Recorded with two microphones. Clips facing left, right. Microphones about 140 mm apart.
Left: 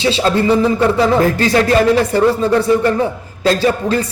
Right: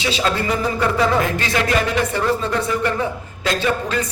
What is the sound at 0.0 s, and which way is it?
Speech, 30° left (ahead or behind).